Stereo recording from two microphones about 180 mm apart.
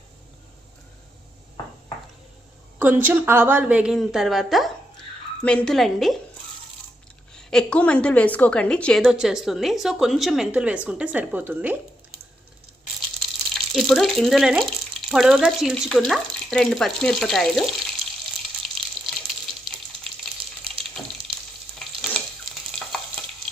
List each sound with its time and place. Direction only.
2.7 s a woman's voice: 10° right (ahead or behind)
7.3 s a woman's voice: 5° left (ahead or behind)
13.1 s a sound: 5° left (ahead or behind)
15.1 s a woman's voice: centre (ahead or behind)
18.8 s water: centre (ahead or behind)
20.2 s typewriter: centre (ahead or behind)
21.8 s stir: 5° left (ahead or behind)